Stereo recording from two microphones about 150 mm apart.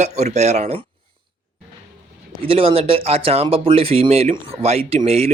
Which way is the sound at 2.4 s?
40° right (ahead or behind).